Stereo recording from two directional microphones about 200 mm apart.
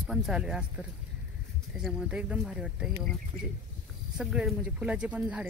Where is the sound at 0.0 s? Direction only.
Centre (ahead or behind).